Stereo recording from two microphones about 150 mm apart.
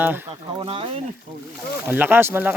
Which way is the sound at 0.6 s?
35° right (ahead or behind).